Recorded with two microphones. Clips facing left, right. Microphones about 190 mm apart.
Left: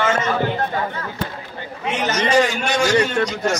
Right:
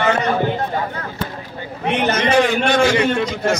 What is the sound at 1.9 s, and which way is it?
A man's voice, 60° right (ahead or behind).